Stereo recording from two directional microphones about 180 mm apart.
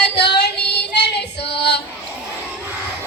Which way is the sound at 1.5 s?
70° left (ahead or behind).